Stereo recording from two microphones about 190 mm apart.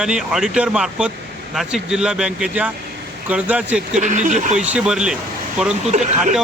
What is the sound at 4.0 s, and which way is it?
Speech, 40° right (ahead or behind).